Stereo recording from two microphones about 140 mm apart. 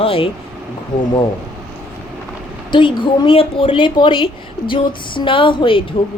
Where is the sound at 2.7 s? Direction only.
35° left (ahead or behind).